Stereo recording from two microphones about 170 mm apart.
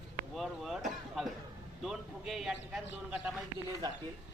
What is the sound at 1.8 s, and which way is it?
Speech, centre (ahead or behind).